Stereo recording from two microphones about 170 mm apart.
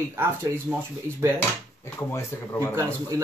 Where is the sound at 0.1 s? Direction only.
15° right (ahead or behind).